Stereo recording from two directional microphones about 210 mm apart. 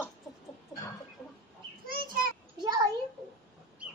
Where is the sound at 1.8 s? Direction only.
45° right (ahead or behind).